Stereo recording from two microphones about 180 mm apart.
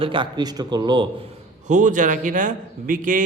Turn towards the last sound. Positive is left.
turn(degrees=-50)  # may be behind; listen again after turning